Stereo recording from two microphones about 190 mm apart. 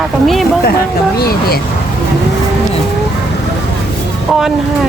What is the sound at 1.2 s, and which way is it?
Speech, 50° left (ahead or behind).